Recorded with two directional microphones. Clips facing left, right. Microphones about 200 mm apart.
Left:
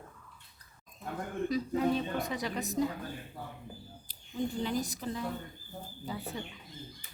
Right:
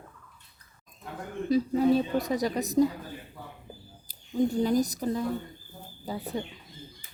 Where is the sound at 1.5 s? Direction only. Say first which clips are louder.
Right 7 dB; 35° right (ahead or behind).